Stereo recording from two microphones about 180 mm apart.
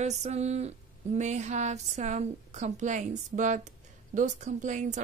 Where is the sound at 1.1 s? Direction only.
40° right (ahead or behind).